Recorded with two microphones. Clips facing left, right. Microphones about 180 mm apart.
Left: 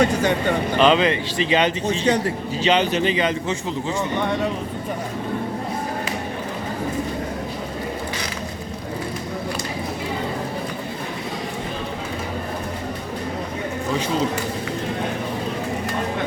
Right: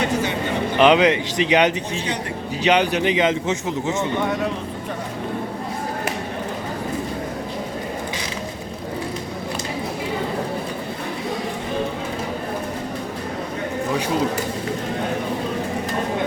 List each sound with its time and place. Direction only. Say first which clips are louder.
0.8 s speech: right 3 dB; 15° right (ahead or behind)